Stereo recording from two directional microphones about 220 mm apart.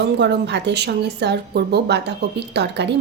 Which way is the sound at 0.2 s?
50° right (ahead or behind).